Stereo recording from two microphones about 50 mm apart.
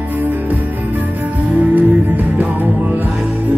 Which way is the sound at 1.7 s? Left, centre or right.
Right.